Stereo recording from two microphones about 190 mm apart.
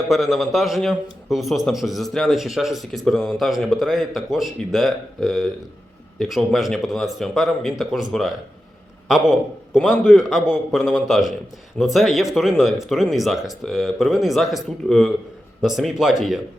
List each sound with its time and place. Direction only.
0.1 s a man's voice: centre (ahead or behind)